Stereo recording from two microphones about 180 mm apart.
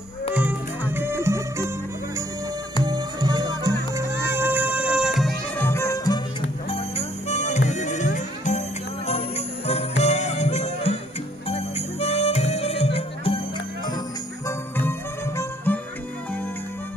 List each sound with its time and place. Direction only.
0.3 s music: 10° right (ahead or behind)
2.8 s music: 25° right (ahead or behind); by 5.3 s centre (ahead or behind)
5.6 s music: 15° left (ahead or behind)
6.7 s music: 35° left (ahead or behind)
14.8 s music: 10° left (ahead or behind)